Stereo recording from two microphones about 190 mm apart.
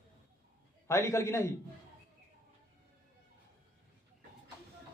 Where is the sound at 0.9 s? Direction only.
15° left (ahead or behind).